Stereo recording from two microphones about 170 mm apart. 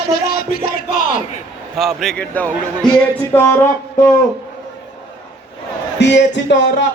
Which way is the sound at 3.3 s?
15° left (ahead or behind).